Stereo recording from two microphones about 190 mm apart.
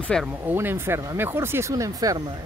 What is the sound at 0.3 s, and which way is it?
Speech, 10° right (ahead or behind).